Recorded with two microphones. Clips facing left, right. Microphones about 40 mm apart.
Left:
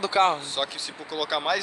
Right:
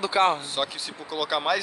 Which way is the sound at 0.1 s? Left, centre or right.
Centre.